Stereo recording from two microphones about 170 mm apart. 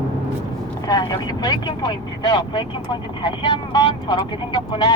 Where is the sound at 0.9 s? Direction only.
25° left (ahead or behind).